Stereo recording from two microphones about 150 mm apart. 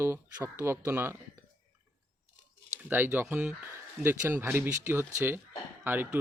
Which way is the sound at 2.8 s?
10° right (ahead or behind).